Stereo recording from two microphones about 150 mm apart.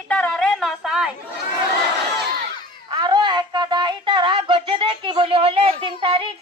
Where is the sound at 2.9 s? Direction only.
30° right (ahead or behind).